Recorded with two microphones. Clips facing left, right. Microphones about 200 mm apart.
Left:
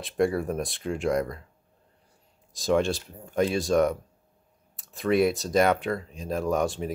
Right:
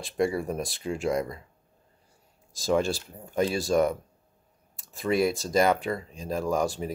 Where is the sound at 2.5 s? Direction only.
Centre (ahead or behind).